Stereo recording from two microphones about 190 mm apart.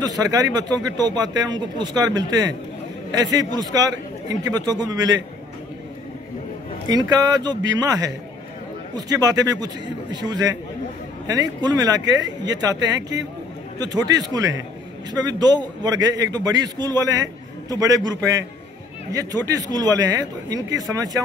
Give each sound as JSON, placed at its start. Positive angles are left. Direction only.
{"t": 0.0, "sound": "a man's voice", "side_deg": -20}
{"t": 6.9, "sound": "a man's voice", "side_deg": -20}
{"t": 19.1, "sound": "a man's voice", "side_deg": -20}